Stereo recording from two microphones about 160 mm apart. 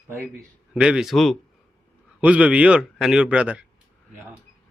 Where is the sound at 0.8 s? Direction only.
5° right (ahead or behind).